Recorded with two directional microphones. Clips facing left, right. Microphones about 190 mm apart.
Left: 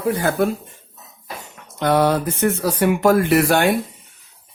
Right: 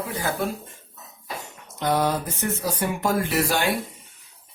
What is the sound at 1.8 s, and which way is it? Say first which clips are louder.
Speech: left 6 dB; 70° left (ahead or behind).